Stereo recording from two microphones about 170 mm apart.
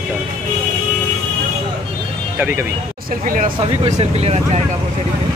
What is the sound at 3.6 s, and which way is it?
Speech, 35° right (ahead or behind).